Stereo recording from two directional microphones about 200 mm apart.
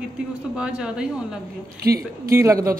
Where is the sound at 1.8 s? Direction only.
50° right (ahead or behind).